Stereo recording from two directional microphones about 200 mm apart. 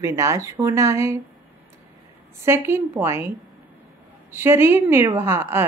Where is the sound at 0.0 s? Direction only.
15° right (ahead or behind).